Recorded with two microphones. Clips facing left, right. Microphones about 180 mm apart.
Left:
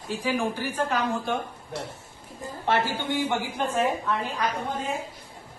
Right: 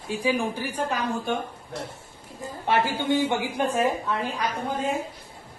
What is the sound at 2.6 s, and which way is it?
Speech, 15° right (ahead or behind).